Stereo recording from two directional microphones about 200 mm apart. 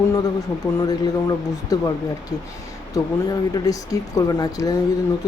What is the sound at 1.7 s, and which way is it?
Speech, 20° left (ahead or behind).